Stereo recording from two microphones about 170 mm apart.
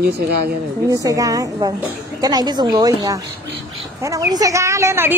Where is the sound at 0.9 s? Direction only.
20° right (ahead or behind).